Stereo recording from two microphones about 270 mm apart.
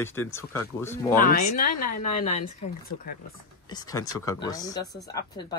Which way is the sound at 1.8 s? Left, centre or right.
Left.